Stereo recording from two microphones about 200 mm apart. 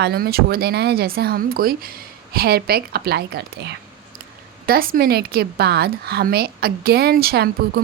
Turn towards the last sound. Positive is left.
turn(degrees=-50)  # may be behind; listen again after turning